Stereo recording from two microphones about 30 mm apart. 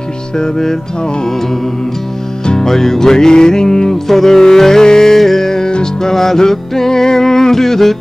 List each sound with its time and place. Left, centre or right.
0.4 s music: centre
2.4 s music: centre
3.9 s music: centre
5.1 s music: centre
5.7 s music: left
6.1 s music: centre